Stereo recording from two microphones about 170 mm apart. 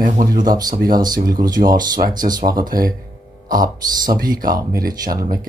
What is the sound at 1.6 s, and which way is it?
Speech, 50° right (ahead or behind).